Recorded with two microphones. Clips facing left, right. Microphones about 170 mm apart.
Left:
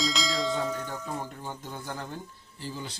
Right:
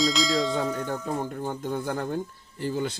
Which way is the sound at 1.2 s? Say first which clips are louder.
Right 9 dB; 50° right (ahead or behind).